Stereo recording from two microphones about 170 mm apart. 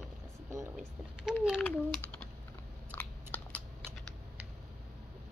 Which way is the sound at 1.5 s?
5° left (ahead or behind).